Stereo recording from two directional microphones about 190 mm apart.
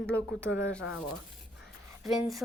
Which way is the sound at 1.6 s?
Centre (ahead or behind).